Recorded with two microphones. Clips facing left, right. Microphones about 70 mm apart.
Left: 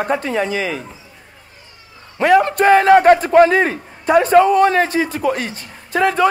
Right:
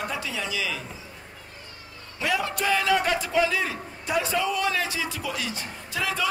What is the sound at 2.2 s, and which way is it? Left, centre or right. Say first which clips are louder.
A man's voice: left 14 dB; left.